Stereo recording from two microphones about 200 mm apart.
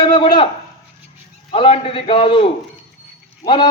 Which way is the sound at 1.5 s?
30° left (ahead or behind).